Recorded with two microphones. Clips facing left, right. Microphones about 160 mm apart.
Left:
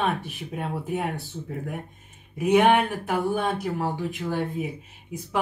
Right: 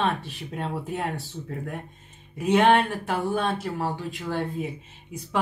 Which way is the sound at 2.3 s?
15° left (ahead or behind).